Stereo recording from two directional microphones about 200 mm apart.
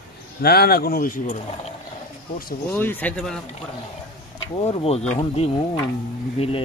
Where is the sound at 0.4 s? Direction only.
50° left (ahead or behind).